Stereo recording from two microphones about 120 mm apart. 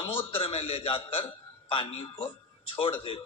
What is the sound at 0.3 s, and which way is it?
A man's voice, 50° left (ahead or behind).